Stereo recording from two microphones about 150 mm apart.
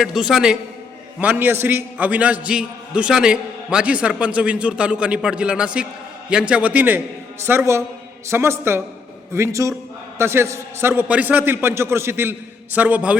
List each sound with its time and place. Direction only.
0.0 s a man's voice: 5° right (ahead or behind)